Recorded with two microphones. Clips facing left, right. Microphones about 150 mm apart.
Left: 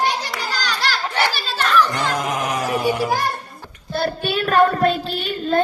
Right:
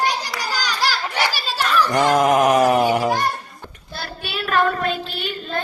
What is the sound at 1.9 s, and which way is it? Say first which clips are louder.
A man's voice: right 7 dB; 50° right (ahead or behind).